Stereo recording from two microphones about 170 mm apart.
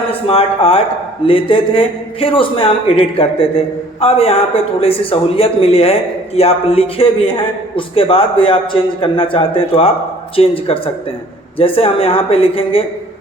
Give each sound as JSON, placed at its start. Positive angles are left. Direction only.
{"t": 0.1, "sound": "speech", "side_deg": 35}